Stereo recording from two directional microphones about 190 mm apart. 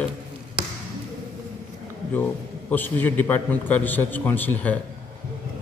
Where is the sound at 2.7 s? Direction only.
10° left (ahead or behind).